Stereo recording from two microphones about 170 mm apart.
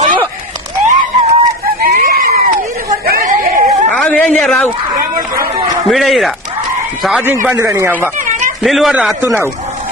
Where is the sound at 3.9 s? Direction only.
10° left (ahead or behind).